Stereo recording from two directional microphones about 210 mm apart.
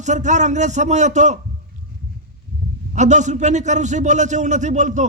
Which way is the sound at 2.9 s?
35° right (ahead or behind).